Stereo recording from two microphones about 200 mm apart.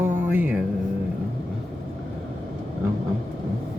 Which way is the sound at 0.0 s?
10° right (ahead or behind).